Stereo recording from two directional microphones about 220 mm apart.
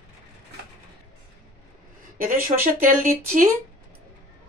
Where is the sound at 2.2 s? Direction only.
40° right (ahead or behind).